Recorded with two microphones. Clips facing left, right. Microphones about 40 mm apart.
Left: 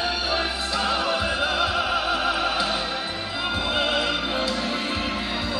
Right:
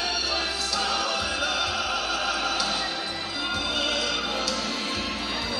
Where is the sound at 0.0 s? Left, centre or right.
Left.